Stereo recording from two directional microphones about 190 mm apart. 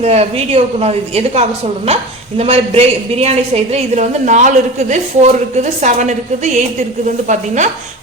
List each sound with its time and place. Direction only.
0.0 s a woman's voice: 35° right (ahead or behind)